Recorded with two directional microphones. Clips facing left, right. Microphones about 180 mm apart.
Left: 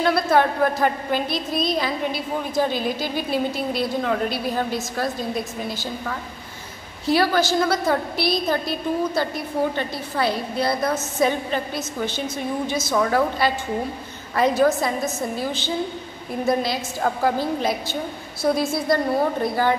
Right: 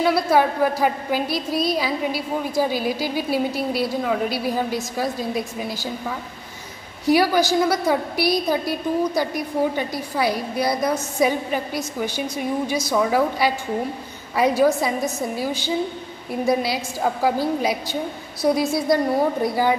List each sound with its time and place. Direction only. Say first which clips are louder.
0.0 s a woman's voice: right 1 dB; 10° right (ahead or behind)